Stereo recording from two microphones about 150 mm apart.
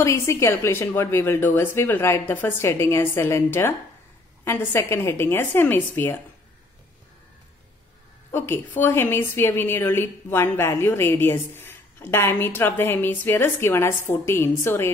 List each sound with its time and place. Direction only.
0.0 s a woman's voice: 20° left (ahead or behind)
8.3 s a woman's voice: 15° left (ahead or behind)